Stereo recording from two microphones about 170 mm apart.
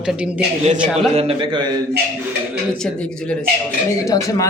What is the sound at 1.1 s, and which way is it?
Speech, 35° right (ahead or behind).